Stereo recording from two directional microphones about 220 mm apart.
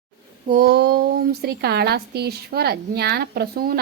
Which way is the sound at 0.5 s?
50° right (ahead or behind).